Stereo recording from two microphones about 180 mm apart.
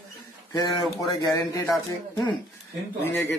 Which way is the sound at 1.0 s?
15° left (ahead or behind).